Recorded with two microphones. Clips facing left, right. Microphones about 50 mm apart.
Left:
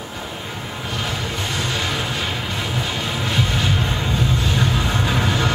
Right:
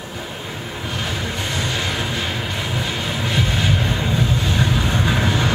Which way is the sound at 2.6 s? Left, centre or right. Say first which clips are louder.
Even; centre.